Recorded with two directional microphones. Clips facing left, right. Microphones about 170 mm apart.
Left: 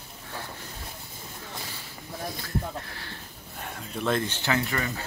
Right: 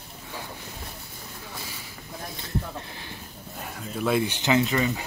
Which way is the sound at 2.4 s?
20° right (ahead or behind).